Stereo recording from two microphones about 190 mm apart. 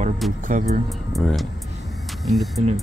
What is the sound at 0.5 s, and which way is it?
Speech, 45° right (ahead or behind).